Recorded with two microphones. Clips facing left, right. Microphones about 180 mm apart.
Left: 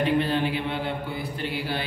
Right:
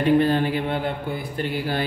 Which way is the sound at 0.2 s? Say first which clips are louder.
Right 4 dB; 45° right (ahead or behind).